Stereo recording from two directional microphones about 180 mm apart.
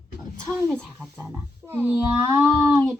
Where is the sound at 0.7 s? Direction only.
10° right (ahead or behind).